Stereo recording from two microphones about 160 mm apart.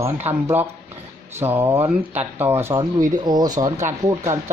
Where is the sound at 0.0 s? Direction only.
15° right (ahead or behind).